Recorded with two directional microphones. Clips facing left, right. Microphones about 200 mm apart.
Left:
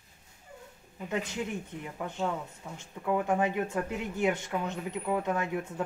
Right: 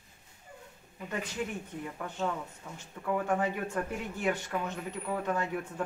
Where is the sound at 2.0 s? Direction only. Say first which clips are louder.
Left 2 dB; 15° left (ahead or behind).